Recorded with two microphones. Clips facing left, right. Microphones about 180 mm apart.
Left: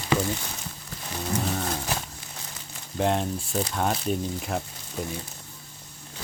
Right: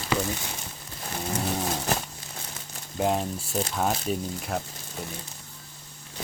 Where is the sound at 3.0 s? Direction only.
5° right (ahead or behind).